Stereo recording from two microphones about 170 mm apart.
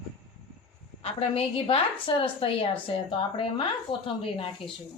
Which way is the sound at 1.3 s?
35° left (ahead or behind).